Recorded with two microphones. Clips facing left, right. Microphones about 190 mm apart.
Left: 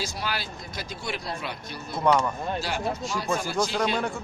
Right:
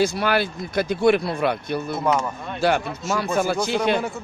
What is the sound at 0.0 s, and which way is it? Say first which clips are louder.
Speech: right 12 dB; 60° right (ahead or behind).